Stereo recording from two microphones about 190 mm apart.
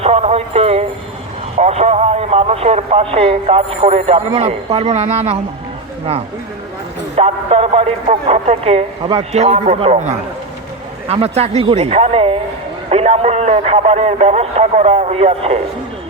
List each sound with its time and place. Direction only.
0.0 s music: 35° right (ahead or behind)
1.5 s speech: 35° right (ahead or behind)
7.2 s speech: 35° right (ahead or behind)